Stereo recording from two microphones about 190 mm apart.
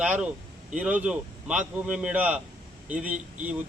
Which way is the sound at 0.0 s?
5° right (ahead or behind).